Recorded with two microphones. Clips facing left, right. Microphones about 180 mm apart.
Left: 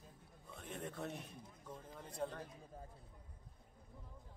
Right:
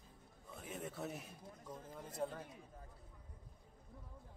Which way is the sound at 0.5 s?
5° right (ahead or behind).